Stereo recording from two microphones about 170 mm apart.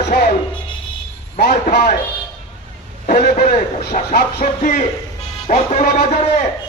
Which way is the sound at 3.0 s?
60° left (ahead or behind).